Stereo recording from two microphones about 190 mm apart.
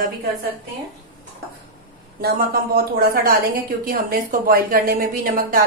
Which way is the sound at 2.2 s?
55° right (ahead or behind).